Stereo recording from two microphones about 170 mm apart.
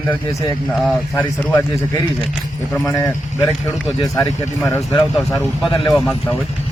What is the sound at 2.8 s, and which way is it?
Speech, 20° left (ahead or behind).